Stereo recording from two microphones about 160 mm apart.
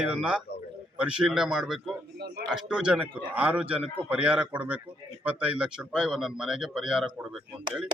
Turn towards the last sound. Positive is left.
turn(degrees=0)  # may be behind; listen again after turning